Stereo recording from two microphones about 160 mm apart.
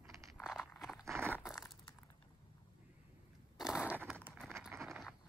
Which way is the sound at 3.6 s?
5° right (ahead or behind).